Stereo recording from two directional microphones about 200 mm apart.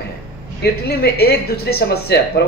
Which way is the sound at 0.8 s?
50° left (ahead or behind).